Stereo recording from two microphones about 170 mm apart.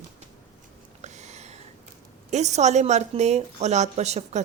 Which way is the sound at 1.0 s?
40° right (ahead or behind).